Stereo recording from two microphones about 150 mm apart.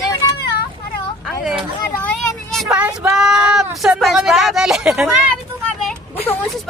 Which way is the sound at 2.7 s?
10° right (ahead or behind).